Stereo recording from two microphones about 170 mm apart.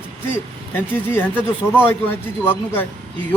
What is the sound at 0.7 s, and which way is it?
Speech, 10° left (ahead or behind).